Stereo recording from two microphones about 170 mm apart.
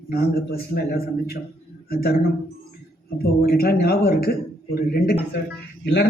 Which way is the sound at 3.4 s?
60° left (ahead or behind).